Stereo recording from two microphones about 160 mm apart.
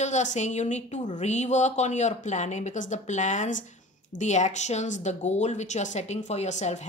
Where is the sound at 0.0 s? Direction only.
50° left (ahead or behind).